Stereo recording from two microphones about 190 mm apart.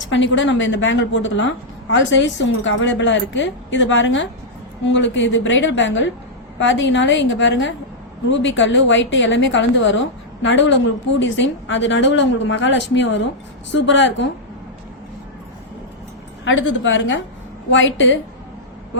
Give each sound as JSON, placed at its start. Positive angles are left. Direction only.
{"t": 0.1, "sound": "a woman's voice", "side_deg": 75}
{"t": 16.4, "sound": "a woman's voice", "side_deg": 85}
{"t": 17.7, "sound": "a woman's voice", "side_deg": 75}